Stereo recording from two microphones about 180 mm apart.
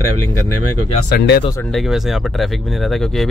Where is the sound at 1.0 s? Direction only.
60° left (ahead or behind).